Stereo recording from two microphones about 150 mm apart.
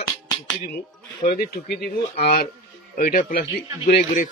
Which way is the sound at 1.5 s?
90° left.